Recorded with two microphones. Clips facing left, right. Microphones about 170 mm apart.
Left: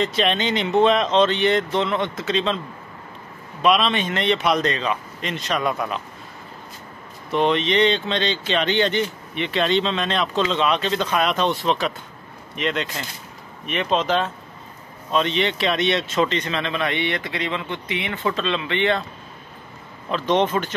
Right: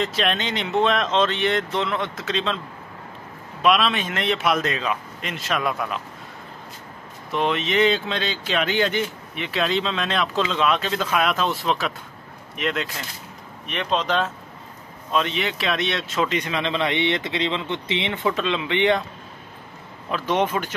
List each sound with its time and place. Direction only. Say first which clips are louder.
0.0 s speech: left 3 dB; centre (ahead or behind)
3.6 s speech: left 1 dB; centre (ahead or behind)
7.2 s speech: left 4 dB; centre (ahead or behind); by 19.0 s 15° right (ahead or behind)
20.1 s speech: left 2 dB; 10° right (ahead or behind)